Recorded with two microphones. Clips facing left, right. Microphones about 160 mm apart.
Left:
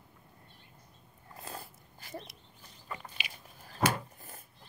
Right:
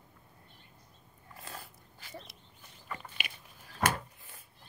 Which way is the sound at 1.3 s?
35° left (ahead or behind).